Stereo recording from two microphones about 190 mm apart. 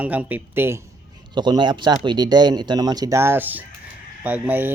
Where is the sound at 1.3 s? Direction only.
25° right (ahead or behind).